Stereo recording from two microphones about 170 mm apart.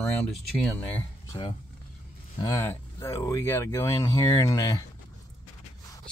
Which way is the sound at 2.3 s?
20° left (ahead or behind).